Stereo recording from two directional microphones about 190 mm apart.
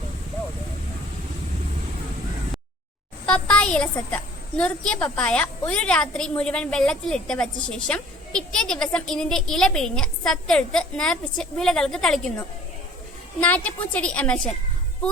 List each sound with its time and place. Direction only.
3.2 s a woman's voice: 5° left (ahead or behind)
13.4 s a woman's voice: 10° left (ahead or behind)